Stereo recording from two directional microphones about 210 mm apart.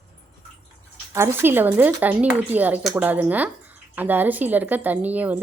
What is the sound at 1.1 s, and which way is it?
Speech, 10° right (ahead or behind).